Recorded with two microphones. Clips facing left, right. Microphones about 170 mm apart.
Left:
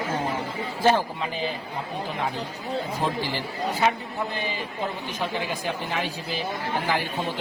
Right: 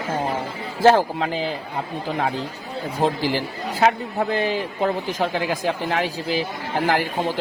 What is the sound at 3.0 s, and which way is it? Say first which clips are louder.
A man's voice: right 6 dB; 90° right.